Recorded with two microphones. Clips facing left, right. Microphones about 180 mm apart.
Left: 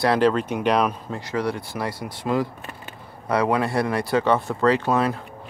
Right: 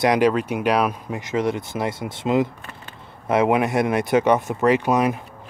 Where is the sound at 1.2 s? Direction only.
20° right (ahead or behind).